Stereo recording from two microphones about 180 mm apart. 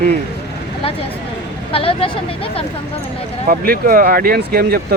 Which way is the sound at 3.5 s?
55° right (ahead or behind).